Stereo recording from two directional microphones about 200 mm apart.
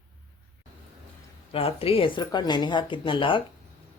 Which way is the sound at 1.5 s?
30° left (ahead or behind).